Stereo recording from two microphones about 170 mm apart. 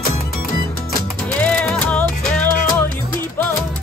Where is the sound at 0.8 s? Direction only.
5° left (ahead or behind).